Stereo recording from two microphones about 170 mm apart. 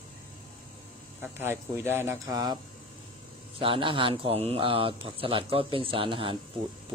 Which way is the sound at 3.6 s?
30° right (ahead or behind).